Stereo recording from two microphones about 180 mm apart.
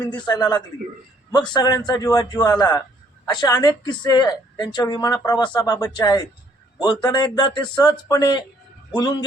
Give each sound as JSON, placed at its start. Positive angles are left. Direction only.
{"t": 0.2, "sound": "a woman's voice", "side_deg": 25}